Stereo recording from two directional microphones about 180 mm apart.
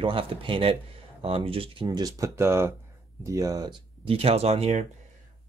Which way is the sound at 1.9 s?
20° right (ahead or behind).